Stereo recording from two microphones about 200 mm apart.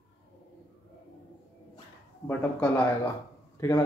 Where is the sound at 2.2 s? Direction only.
10° left (ahead or behind).